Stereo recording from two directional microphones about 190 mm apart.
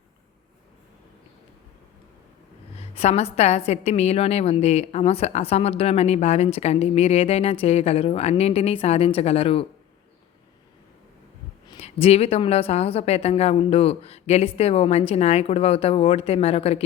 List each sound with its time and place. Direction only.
2.7 s a woman's voice: 35° left (ahead or behind)
11.7 s a woman's voice: 30° left (ahead or behind)